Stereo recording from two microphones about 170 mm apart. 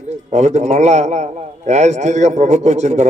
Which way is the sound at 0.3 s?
45° right (ahead or behind).